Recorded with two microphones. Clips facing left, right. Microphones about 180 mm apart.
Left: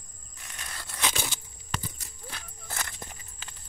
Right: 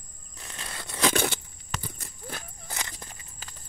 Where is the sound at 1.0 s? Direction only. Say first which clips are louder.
Right 8 dB; 60° right (ahead or behind).